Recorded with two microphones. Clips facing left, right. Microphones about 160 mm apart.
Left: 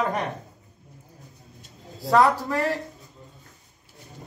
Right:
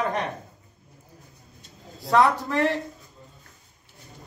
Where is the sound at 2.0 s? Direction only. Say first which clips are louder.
Left 1 dB; centre (ahead or behind).